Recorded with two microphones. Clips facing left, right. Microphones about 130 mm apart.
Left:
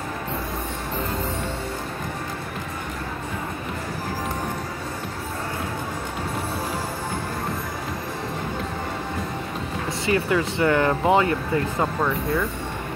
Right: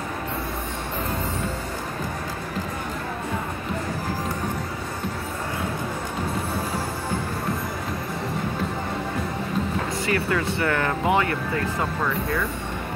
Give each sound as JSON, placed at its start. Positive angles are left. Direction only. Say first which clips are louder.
{"t": 10.0, "sound": "speech", "louder": "left 4 dB", "side_deg": 20}